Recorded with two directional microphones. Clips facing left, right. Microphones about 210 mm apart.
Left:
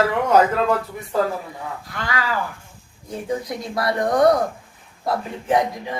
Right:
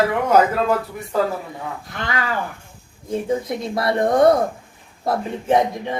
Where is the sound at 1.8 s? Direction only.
20° right (ahead or behind).